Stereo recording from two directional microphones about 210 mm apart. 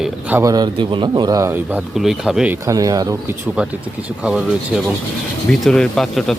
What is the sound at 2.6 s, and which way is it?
Speech, 15° right (ahead or behind).